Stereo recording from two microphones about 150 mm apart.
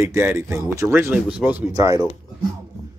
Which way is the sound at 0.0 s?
20° right (ahead or behind).